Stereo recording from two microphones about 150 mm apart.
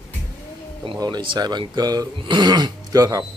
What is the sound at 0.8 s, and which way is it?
Speech, 25° right (ahead or behind).